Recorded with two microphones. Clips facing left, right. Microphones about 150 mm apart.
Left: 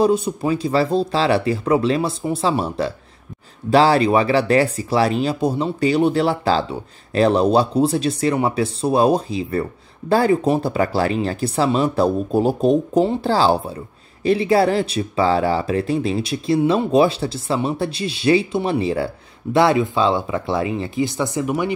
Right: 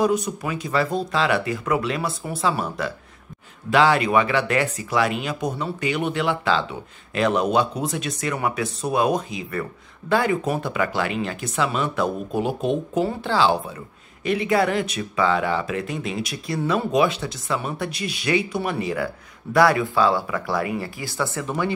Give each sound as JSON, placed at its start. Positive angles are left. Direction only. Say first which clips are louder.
{"t": 0.0, "sound": "speech", "louder": "left 4 dB", "side_deg": 30}